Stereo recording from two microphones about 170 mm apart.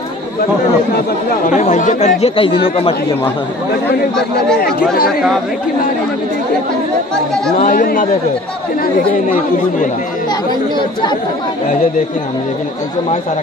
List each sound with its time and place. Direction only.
1.4 s speech: 45° left (ahead or behind)
4.6 s speech: 60° left (ahead or behind)
7.6 s speech: 55° left (ahead or behind)